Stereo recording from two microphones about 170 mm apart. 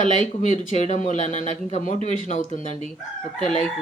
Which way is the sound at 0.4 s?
40° left (ahead or behind).